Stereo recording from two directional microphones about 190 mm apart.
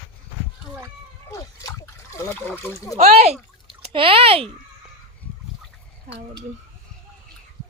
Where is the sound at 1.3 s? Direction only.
20° left (ahead or behind).